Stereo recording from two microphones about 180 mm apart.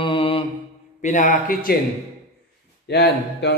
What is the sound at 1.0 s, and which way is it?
Speech, 45° left (ahead or behind).